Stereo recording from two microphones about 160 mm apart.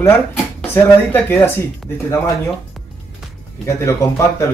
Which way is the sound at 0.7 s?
10° left (ahead or behind).